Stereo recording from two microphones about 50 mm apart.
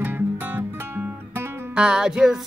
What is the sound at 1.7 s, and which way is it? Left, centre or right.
Music, centre.